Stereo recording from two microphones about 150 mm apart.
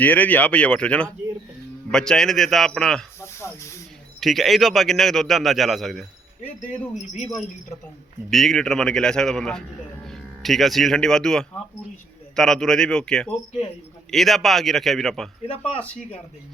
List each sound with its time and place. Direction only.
0.0 s a man's voice: 10° left (ahead or behind)
3.2 s snake: 20° left (ahead or behind)
4.2 s a man's voice: centre (ahead or behind)
8.3 s a man's voice: centre (ahead or behind)
15.4 s speech: 40° left (ahead or behind)